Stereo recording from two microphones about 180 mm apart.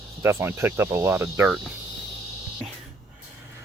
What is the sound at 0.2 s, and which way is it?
Speech, 15° right (ahead or behind).